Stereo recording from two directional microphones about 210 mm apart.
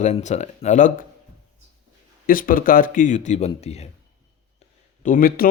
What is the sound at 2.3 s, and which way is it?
Speech, 40° left (ahead or behind).